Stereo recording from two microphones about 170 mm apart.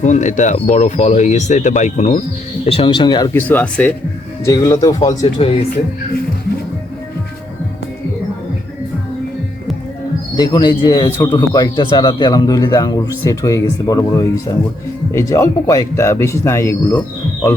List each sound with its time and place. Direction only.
0.0 s speech: 45° left (ahead or behind)
2.6 s speech: 30° left (ahead or behind)
3.3 s speech: 10° left (ahead or behind)
4.4 s speech: 20° left (ahead or behind)
5.2 s speech: 35° left (ahead or behind)
10.3 s speech: 25° left (ahead or behind)